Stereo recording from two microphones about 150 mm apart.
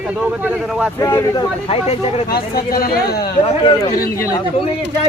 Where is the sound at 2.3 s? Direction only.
80° left.